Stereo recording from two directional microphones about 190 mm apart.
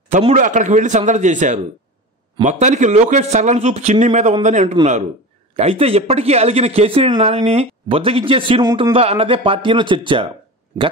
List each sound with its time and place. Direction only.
0.1 s a man's voice: 35° right (ahead or behind)